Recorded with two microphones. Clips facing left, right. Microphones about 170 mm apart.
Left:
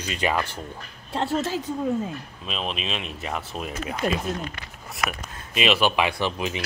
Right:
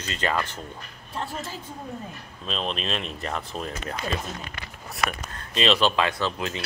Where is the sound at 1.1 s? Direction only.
75° left (ahead or behind).